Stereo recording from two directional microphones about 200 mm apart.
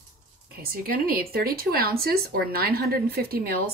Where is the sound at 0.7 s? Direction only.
45° right (ahead or behind).